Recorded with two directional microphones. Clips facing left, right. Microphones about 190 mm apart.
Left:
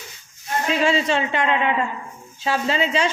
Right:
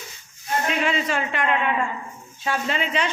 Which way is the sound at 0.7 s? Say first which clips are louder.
Left 6 dB; 30° left (ahead or behind).